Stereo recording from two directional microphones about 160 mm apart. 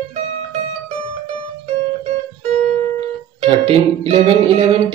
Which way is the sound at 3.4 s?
35° right (ahead or behind).